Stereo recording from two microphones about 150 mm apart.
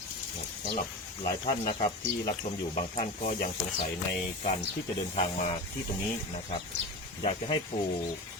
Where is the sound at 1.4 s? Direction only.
30° left (ahead or behind).